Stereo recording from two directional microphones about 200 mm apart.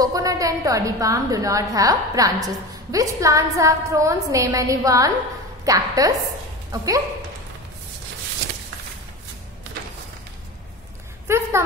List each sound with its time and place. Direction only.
0.0 s a woman's voice: 15° right (ahead or behind)
11.2 s speech: 15° right (ahead or behind)